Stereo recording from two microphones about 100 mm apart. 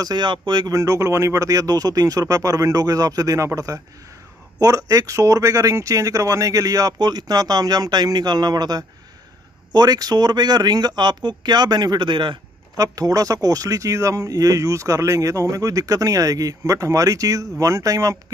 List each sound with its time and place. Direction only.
0.0 s speech: 50° right (ahead or behind)
0.7 s speech: 30° right (ahead or behind); by 12.4 s 55° right (ahead or behind)
12.7 s speech: 35° right (ahead or behind)